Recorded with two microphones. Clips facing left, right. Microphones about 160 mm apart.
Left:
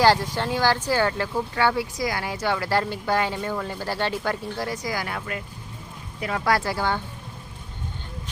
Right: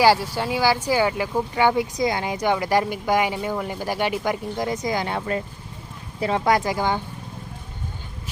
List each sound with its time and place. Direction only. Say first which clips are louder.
0.0 s speech: right 1 dB; 10° right (ahead or behind)